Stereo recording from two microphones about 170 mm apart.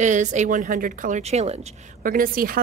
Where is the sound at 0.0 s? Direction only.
45° right (ahead or behind).